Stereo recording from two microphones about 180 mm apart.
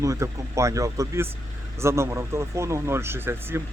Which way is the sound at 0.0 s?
15° right (ahead or behind).